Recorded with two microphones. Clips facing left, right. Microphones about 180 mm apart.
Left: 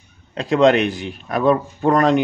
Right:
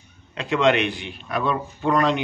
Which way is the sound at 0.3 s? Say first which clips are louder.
Left 5 dB; 40° left (ahead or behind).